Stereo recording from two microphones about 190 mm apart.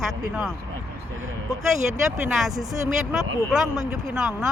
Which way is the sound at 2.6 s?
Centre (ahead or behind).